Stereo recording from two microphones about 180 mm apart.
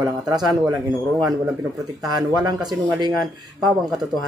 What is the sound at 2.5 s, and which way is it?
Speech, 20° right (ahead or behind).